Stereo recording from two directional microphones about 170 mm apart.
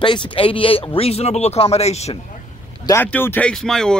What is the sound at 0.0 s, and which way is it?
Speech, 30° left (ahead or behind).